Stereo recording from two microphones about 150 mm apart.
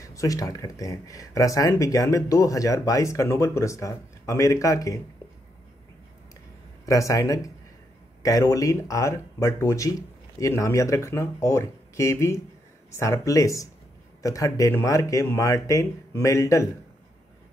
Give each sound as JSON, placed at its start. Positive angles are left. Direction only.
{"t": 0.0, "sound": "speech", "side_deg": 20}
{"t": 6.9, "sound": "speech", "side_deg": 20}